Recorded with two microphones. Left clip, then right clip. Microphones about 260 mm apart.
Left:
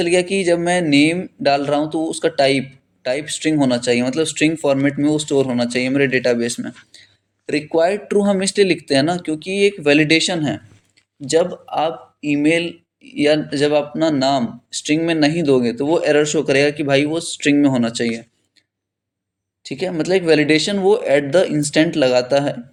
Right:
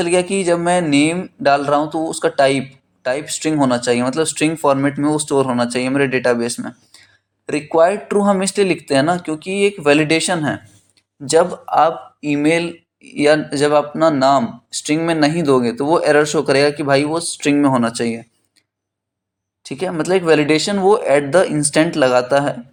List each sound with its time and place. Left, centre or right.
0.0 s speech: centre
19.6 s speech: right